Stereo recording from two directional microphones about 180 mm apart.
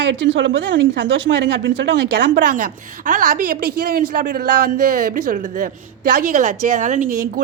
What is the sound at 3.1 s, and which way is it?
A man's voice, 50° right (ahead or behind).